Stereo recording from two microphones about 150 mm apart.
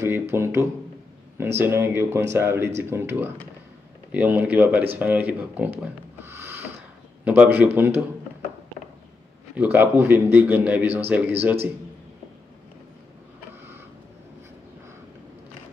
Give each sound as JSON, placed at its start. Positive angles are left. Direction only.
{"t": 0.0, "sound": "a man's voice", "side_deg": -15}
{"t": 9.6, "sound": "a man's voice", "side_deg": -15}